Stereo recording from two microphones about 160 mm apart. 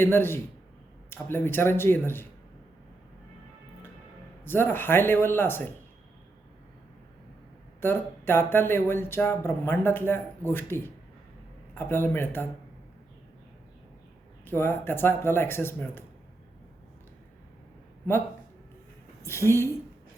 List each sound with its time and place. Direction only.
0.0 s speech: 15° left (ahead or behind)
4.4 s speech: 15° left (ahead or behind)
7.8 s speech: 15° left (ahead or behind)
14.4 s speech: 15° left (ahead or behind)
19.2 s speech: 15° left (ahead or behind)